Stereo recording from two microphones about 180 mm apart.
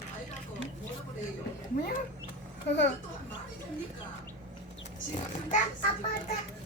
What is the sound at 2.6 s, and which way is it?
Speech, 80° left.